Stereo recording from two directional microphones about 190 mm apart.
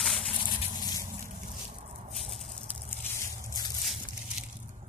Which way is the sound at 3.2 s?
15° left (ahead or behind).